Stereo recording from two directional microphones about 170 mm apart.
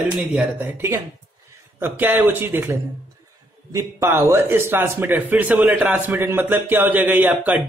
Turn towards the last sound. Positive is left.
turn(degrees=-10)  # may be behind; listen again after turning